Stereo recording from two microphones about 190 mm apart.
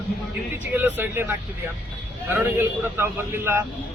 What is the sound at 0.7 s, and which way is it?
Speech, 10° right (ahead or behind).